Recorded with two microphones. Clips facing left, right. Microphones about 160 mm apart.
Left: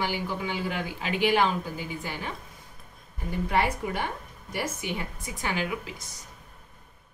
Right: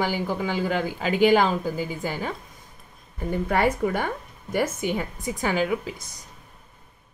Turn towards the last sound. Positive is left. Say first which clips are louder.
# right 6 dB
turn(degrees=-40)  # may be behind; listen again after turning